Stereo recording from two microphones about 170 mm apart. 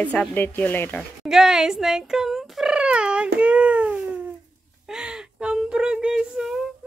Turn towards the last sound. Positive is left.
turn(degrees=-5)  # may be behind; listen again after turning